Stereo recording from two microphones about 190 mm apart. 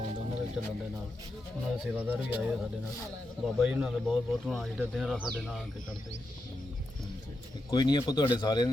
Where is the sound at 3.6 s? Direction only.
5° right (ahead or behind).